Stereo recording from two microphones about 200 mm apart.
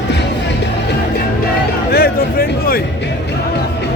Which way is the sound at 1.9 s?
50° left (ahead or behind).